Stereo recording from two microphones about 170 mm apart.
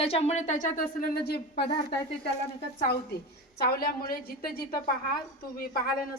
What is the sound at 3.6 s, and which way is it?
A woman's voice, 65° left (ahead or behind).